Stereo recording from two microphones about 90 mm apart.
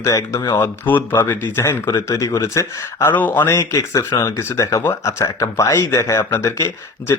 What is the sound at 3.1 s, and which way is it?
Speech, 20° left (ahead or behind).